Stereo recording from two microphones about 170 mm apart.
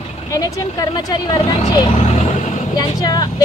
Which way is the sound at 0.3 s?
20° left (ahead or behind).